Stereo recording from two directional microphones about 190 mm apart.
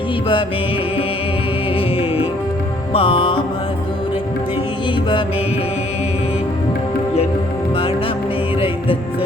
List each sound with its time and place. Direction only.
2.9 s music: 25° left (ahead or behind)